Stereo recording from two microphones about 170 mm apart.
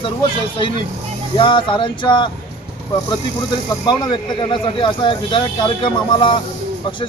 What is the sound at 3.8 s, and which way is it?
Speech, 25° left (ahead or behind).